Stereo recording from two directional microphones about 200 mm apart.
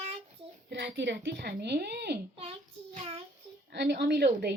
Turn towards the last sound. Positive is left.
turn(degrees=-55)  # may be behind; listen again after turning